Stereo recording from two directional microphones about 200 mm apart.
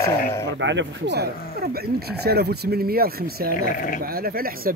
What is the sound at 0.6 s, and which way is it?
Speech, 65° right (ahead or behind).